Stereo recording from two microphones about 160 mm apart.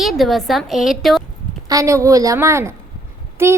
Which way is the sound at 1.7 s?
20° right (ahead or behind).